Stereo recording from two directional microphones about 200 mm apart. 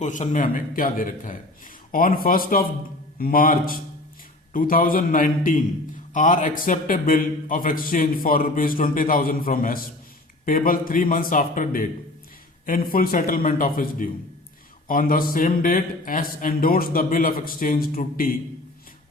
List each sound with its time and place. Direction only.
0.0 s a man's voice: 40° left (ahead or behind)